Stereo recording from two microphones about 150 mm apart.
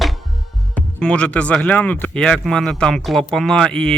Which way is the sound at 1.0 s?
5° left (ahead or behind).